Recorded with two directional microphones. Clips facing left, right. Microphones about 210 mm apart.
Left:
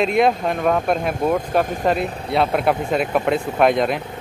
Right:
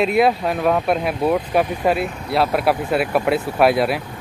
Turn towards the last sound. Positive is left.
turn(degrees=-5)  # may be behind; listen again after turning